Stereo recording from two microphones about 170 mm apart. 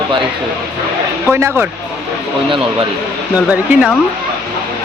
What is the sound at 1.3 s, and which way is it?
Speech, 15° right (ahead or behind).